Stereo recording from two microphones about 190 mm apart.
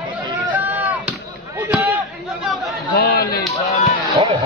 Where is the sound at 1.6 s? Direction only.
10° right (ahead or behind).